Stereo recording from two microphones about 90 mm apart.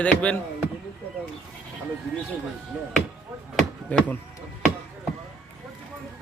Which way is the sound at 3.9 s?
15° left (ahead or behind).